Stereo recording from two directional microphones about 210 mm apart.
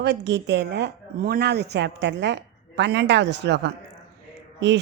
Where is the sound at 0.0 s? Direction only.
55° right (ahead or behind).